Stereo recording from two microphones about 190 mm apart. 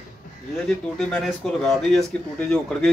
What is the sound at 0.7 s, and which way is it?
Speech, 5° left (ahead or behind).